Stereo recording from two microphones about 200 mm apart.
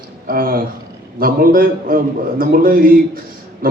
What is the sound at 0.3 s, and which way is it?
A man's voice, 45° right (ahead or behind).